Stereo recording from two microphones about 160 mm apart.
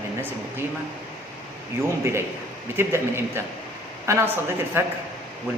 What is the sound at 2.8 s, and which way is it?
Speech, 15° right (ahead or behind).